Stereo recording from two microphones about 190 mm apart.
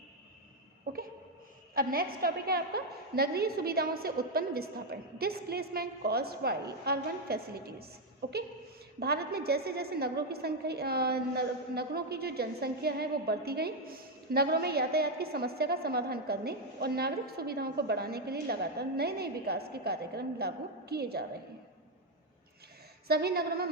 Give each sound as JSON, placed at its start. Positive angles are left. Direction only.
{"t": 1.7, "sound": "a woman's voice", "side_deg": -50}
{"t": 23.0, "sound": "a woman's voice", "side_deg": -55}